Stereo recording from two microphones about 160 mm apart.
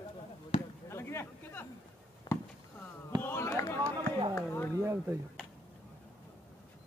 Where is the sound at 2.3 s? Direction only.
30° left (ahead or behind).